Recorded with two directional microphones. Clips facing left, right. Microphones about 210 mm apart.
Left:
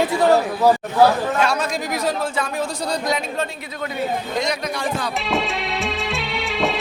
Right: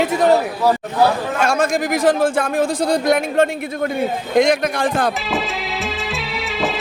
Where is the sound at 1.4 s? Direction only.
50° right (ahead or behind).